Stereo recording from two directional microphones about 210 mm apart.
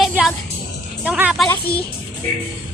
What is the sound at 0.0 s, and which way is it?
Music, 5° right (ahead or behind).